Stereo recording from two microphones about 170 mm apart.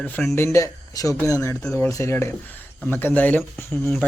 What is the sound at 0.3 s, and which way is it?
Speech, 15° left (ahead or behind).